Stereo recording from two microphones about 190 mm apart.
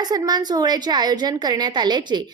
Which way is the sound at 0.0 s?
20° right (ahead or behind).